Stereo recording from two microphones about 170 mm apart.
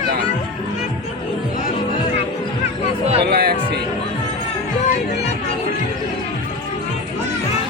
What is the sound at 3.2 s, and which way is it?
Speech, 65° right (ahead or behind).